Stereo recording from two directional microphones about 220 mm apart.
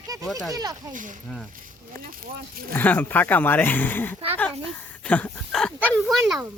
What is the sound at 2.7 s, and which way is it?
Speech, 10° left (ahead or behind).